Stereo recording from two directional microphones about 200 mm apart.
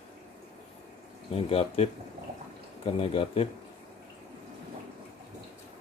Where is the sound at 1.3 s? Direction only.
30° left (ahead or behind).